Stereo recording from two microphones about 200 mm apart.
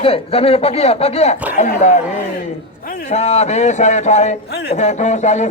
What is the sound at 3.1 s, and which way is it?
Speech, 35° left (ahead or behind).